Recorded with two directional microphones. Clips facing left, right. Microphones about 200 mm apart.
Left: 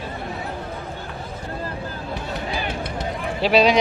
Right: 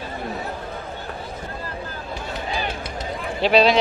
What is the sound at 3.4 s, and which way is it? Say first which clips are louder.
Speech: even; 10° left (ahead or behind).